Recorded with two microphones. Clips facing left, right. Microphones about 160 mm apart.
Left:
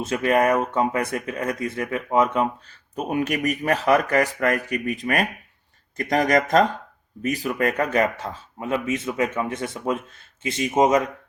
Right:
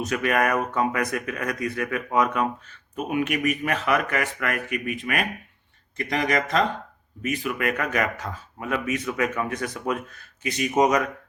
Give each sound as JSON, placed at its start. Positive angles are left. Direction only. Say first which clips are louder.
{"t": 0.0, "sound": "speech", "louder": "left 3 dB", "side_deg": 25}